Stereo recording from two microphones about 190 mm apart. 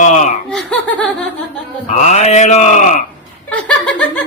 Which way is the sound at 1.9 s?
40° left (ahead or behind).